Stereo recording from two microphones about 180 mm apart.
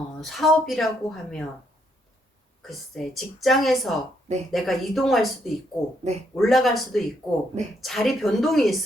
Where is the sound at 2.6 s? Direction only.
Centre (ahead or behind).